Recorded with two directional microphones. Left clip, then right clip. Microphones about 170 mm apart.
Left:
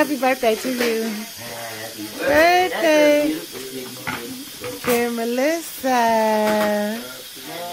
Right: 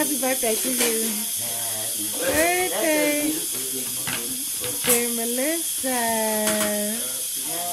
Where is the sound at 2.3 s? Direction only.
10° left (ahead or behind).